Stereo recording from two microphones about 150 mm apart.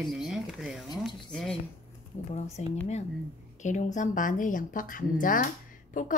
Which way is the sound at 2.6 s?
50° left (ahead or behind).